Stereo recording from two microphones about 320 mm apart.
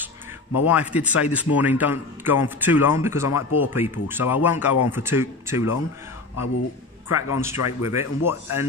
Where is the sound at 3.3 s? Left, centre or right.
Left.